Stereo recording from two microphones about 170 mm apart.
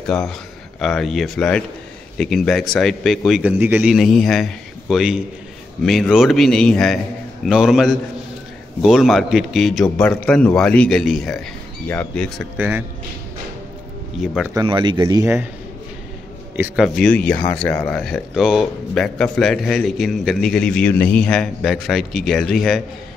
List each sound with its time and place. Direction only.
0.0 s a man's voice: 5° left (ahead or behind)
12.5 s speech: 10° right (ahead or behind)
14.1 s speech: centre (ahead or behind)
14.5 s speech: 25° right (ahead or behind)
16.7 s speech: centre (ahead or behind)